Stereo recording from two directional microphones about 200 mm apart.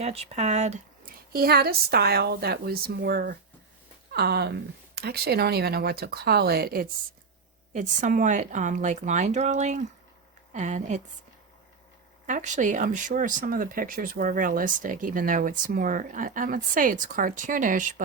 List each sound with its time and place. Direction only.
0.0 s speech: 30° right (ahead or behind)
1.3 s a woman's voice: 50° right (ahead or behind)
12.2 s speech: 40° right (ahead or behind)